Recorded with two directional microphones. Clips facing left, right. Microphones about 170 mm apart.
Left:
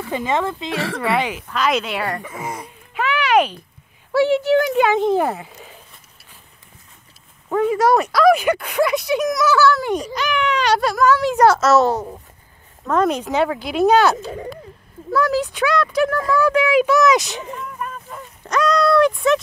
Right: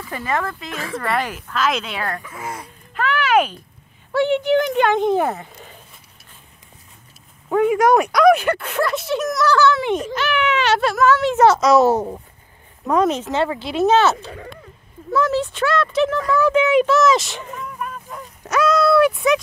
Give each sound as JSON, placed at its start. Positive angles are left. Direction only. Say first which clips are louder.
{"t": 0.1, "sound": "speech", "louder": "left 3 dB", "side_deg": 20}
{"t": 0.7, "sound": "speech", "louder": "left 6 dB", "side_deg": 80}
{"t": 0.9, "sound": "speech", "louder": "even", "side_deg": 0}
{"t": 2.4, "sound": "a sound", "louder": "left 2 dB", "side_deg": 0}
{"t": 4.1, "sound": "speech", "louder": "left 1 dB", "side_deg": 5}
{"t": 7.4, "sound": "a sound", "louder": "right 2 dB", "side_deg": -5}
{"t": 7.8, "sound": "speech", "louder": "even", "side_deg": 5}
{"t": 8.8, "sound": "speech", "louder": "left 3 dB", "side_deg": 15}
{"t": 9.5, "sound": "speech", "louder": "right 1 dB", "side_deg": 5}
{"t": 12.9, "sound": "speech", "louder": "right 1 dB", "side_deg": -15}
{"t": 13.2, "sound": "speech", "louder": "left 1 dB", "side_deg": 0}
{"t": 17.2, "sound": "a sound", "louder": "left 2 dB", "side_deg": 0}
{"t": 18.5, "sound": "speech", "louder": "right 1 dB", "side_deg": -5}